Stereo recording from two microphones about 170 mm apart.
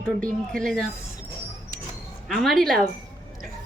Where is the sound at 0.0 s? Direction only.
5° left (ahead or behind).